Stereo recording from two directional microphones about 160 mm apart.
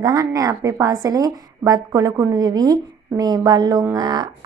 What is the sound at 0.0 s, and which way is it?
A woman's voice, 20° right (ahead or behind).